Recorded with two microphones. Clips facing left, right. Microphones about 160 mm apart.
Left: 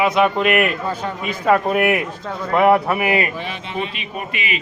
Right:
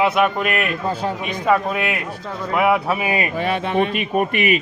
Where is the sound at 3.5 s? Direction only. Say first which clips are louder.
Right 7 dB; 55° right (ahead or behind).